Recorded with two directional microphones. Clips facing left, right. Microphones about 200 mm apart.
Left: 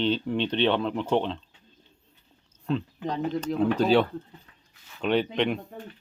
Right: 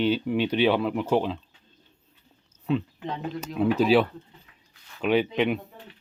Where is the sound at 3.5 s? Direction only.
5° right (ahead or behind).